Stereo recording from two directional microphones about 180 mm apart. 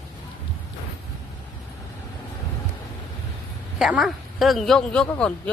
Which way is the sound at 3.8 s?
Centre (ahead or behind).